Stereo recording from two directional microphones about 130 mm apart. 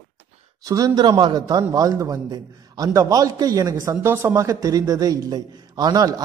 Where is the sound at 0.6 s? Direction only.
30° right (ahead or behind).